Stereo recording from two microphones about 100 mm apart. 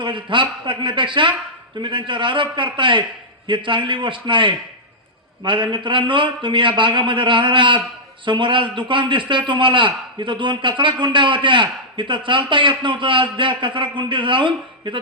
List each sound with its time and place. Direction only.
0.0 s a man's voice: 55° right (ahead or behind)